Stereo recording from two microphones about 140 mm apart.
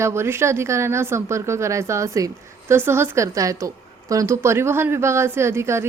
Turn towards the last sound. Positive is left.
turn(degrees=-20)  # may be behind; listen again after turning